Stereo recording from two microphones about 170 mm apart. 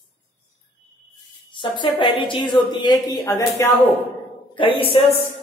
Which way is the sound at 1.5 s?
30° left (ahead or behind).